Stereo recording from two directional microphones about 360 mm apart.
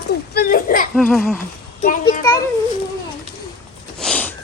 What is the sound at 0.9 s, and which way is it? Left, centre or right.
Speech, centre.